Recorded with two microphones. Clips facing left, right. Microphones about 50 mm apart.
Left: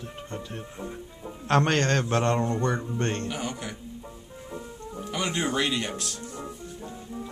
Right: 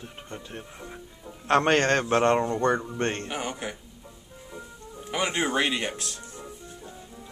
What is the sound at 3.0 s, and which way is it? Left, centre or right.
Speech, right.